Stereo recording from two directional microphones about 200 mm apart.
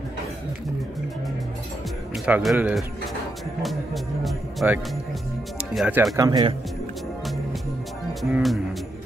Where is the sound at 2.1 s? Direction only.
5° right (ahead or behind).